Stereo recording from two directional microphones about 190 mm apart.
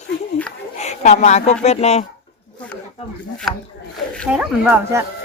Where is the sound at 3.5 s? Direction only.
Centre (ahead or behind).